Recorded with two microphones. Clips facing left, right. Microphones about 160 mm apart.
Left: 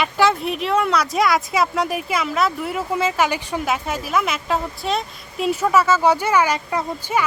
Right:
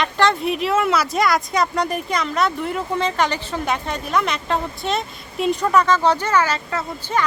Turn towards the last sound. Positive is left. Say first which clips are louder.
# left 1 dB
turn(degrees=15)  # may be behind; listen again after turning